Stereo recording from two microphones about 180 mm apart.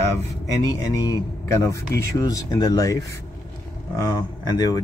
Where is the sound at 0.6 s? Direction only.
20° left (ahead or behind).